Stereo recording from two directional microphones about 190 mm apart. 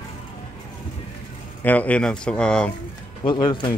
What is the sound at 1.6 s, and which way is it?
Speech, 10° left (ahead or behind).